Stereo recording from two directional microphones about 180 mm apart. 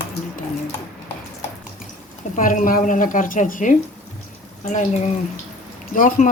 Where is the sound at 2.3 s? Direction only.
50° left (ahead or behind).